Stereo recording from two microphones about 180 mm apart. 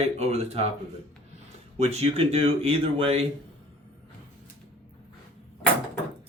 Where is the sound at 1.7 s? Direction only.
35° right (ahead or behind).